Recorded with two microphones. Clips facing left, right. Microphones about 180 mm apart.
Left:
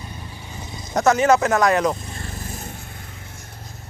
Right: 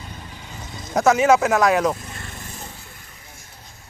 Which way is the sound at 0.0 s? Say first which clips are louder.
Left 1 dB; 10° left (ahead or behind).